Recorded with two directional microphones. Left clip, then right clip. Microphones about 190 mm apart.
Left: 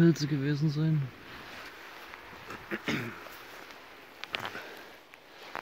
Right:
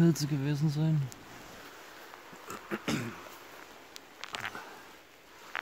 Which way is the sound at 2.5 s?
35° right (ahead or behind).